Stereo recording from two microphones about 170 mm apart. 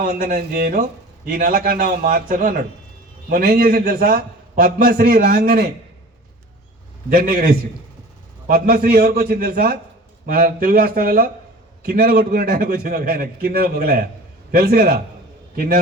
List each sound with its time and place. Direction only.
0.0 s a man's voice: 55° right (ahead or behind)
7.1 s a man's voice: 60° right (ahead or behind)